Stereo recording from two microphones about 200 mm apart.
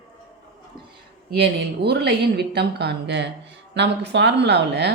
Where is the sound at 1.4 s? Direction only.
55° right (ahead or behind).